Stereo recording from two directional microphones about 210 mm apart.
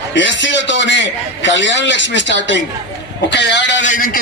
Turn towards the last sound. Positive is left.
turn(degrees=55)  # may be behind; listen again after turning